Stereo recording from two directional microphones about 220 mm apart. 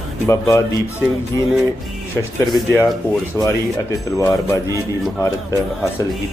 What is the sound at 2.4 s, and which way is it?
Speech, 20° left (ahead or behind).